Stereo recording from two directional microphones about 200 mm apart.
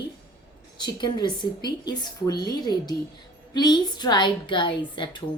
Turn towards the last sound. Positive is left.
turn(degrees=25)  # may be behind; listen again after turning